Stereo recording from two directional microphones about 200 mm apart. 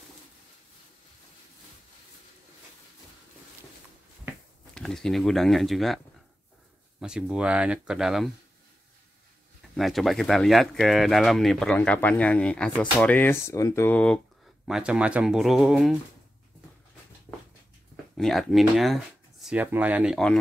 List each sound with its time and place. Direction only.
4.7 s speech: centre (ahead or behind)
7.0 s speech: 5° right (ahead or behind)
9.8 s speech: centre (ahead or behind)
14.7 s speech: 5° right (ahead or behind)
18.1 s speech: centre (ahead or behind)